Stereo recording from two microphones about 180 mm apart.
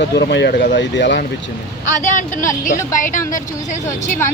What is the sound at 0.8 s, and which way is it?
Speech, 80° left.